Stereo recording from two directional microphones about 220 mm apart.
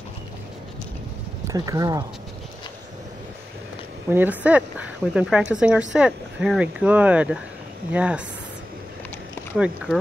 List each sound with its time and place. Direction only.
1.5 s speech: 15° right (ahead or behind)
4.1 s speech: 10° right (ahead or behind)